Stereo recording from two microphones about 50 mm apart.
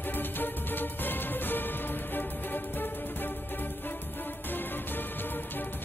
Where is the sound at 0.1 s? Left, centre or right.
Left.